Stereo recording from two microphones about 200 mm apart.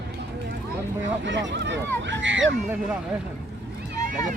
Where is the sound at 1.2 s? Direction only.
65° right (ahead or behind).